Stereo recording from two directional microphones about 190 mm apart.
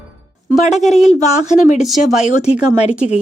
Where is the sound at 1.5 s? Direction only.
40° left (ahead or behind).